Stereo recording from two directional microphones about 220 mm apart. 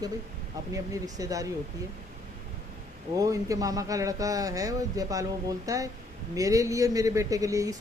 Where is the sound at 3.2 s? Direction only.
15° right (ahead or behind).